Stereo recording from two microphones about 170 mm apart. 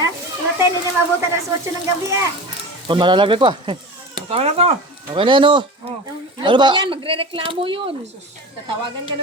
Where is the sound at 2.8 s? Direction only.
30° right (ahead or behind).